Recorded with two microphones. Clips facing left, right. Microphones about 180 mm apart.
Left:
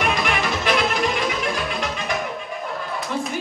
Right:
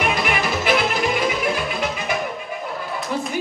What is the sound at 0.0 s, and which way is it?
Music, 5° right (ahead or behind).